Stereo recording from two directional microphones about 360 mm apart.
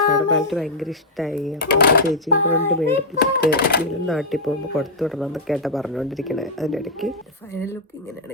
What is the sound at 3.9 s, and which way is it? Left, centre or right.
Speech, centre.